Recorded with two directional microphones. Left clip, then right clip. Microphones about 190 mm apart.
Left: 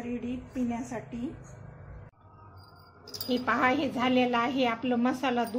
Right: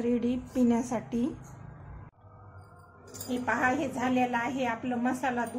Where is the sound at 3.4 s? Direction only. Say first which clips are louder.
Left 1 dB; 40° left (ahead or behind).